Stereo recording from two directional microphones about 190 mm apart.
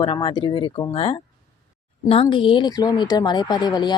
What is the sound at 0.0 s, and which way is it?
A woman's voice, 25° left (ahead or behind).